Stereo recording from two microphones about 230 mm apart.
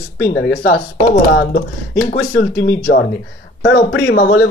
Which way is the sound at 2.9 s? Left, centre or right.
Left.